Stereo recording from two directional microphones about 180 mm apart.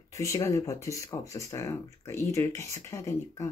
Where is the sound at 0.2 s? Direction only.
15° left (ahead or behind).